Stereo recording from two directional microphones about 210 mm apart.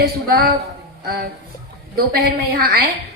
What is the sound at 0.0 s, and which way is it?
A woman's voice, 45° right (ahead or behind).